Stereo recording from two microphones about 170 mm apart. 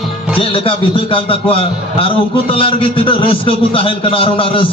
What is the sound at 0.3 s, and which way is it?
A man's voice, 30° left (ahead or behind).